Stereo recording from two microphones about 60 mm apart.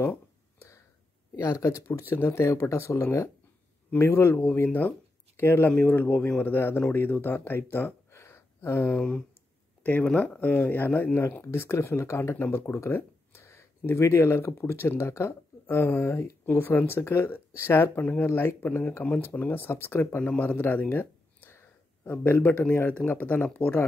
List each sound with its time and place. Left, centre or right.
0.6 s a sound: left
1.3 s speech: left
2.0 s speech: left
8.9 s speech: centre
11.5 s speech: left
12.4 s speech: left